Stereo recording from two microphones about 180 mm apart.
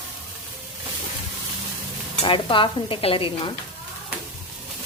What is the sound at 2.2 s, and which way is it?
Stir, 30° left (ahead or behind).